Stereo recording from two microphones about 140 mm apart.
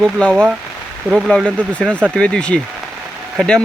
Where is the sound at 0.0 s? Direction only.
5° left (ahead or behind).